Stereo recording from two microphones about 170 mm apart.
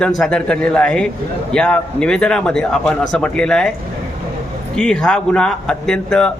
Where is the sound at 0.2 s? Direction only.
5° left (ahead or behind).